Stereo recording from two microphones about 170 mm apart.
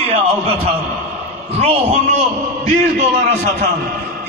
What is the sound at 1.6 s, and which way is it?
Speech, 35° right (ahead or behind).